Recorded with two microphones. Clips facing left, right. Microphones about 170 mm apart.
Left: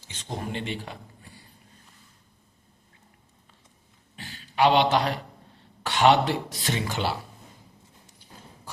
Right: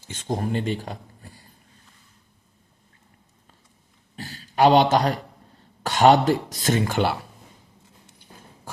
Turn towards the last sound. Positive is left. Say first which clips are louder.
# right 6 dB
turn(degrees=-55)  # may be behind; listen again after turning